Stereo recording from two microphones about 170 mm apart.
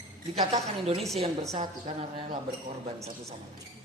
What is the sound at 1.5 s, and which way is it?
Speech, 35° right (ahead or behind).